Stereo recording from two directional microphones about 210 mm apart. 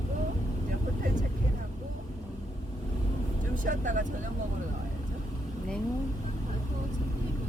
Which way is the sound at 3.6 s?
40° right (ahead or behind).